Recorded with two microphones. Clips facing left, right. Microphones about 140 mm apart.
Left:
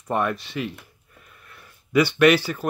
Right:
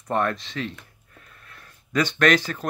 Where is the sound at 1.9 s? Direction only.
10° left (ahead or behind).